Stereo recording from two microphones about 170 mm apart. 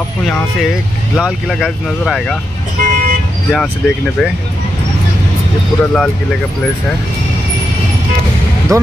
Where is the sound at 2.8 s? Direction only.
55° right (ahead or behind).